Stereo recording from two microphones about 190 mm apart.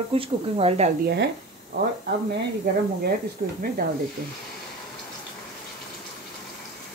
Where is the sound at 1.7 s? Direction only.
60° right (ahead or behind).